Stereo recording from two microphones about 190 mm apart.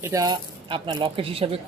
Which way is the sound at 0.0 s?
15° right (ahead or behind).